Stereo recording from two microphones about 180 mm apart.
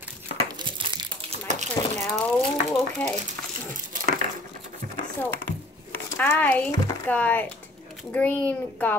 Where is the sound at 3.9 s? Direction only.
45° right (ahead or behind).